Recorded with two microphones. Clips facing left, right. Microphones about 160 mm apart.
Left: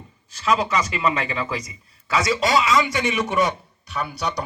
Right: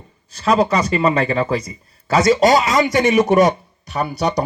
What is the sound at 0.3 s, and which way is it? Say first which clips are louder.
A man's voice: right 5 dB; 35° right (ahead or behind).